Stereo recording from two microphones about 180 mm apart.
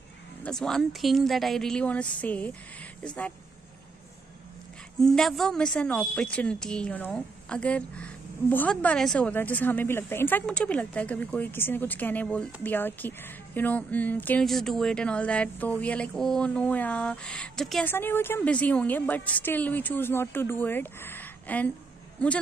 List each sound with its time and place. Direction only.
0.4 s speech: 5° left (ahead or behind)
5.0 s a woman's voice: centre (ahead or behind)